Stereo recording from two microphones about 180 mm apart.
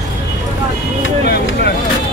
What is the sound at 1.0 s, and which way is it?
Speech, 65° left (ahead or behind).